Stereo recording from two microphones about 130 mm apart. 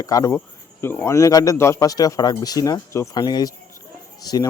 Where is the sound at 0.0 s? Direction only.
25° left (ahead or behind).